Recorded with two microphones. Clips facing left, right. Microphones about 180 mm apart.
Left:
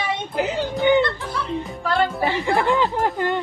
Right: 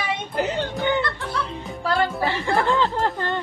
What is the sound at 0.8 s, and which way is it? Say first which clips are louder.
Music: left 7 dB; 20° left (ahead or behind).